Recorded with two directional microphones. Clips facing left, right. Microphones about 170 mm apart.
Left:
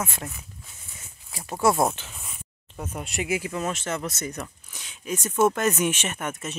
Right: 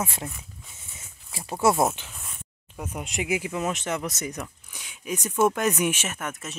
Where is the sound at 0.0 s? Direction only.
30° right (ahead or behind).